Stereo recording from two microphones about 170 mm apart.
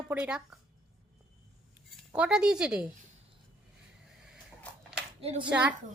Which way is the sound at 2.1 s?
5° right (ahead or behind).